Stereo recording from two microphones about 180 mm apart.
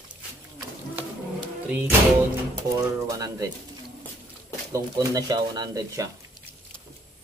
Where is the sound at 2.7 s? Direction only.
20° right (ahead or behind).